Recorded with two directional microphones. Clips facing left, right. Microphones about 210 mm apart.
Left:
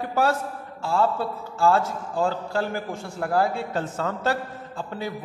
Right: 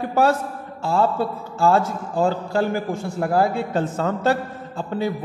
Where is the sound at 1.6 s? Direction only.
20° right (ahead or behind).